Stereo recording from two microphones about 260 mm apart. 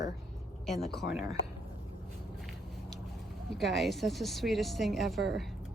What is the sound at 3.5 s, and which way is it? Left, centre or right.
Speech, centre.